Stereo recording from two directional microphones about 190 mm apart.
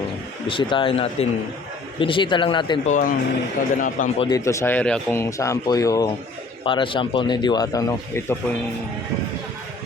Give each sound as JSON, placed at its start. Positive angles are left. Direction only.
{"t": 0.4, "sound": "speech", "side_deg": 25}
{"t": 2.8, "sound": "speech", "side_deg": 45}
{"t": 4.2, "sound": "speech", "side_deg": 20}